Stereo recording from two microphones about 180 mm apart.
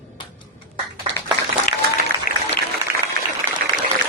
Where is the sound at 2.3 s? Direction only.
50° left (ahead or behind).